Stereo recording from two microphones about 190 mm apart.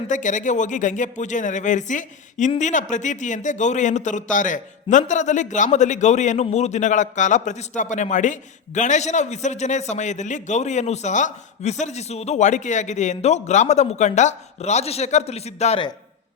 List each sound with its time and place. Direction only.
0.1 s a man's voice: 40° left (ahead or behind)